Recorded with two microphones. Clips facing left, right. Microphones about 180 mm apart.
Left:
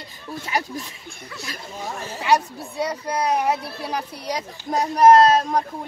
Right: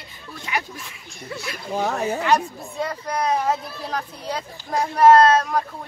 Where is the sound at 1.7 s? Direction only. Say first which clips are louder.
Right 10 dB; 75° right (ahead or behind).